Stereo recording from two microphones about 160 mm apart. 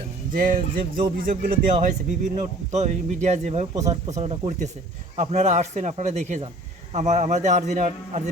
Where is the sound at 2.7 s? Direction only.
45° right (ahead or behind).